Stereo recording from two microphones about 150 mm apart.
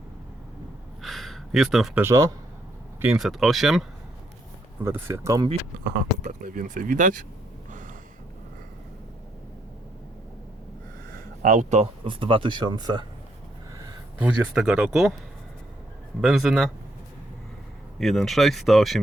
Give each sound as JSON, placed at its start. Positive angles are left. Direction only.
{"t": 1.0, "sound": "a sound", "side_deg": 0}
{"t": 2.0, "sound": "speech", "side_deg": -20}
{"t": 3.0, "sound": "speech", "side_deg": -5}
{"t": 4.8, "sound": "speech", "side_deg": -15}
{"t": 6.2, "sound": "speech", "side_deg": -60}
{"t": 11.4, "sound": "speech", "side_deg": -55}
{"t": 12.0, "sound": "speech", "side_deg": -35}
{"t": 14.2, "sound": "speech", "side_deg": -5}
{"t": 16.2, "sound": "speech", "side_deg": 0}
{"t": 18.0, "sound": "speech", "side_deg": 0}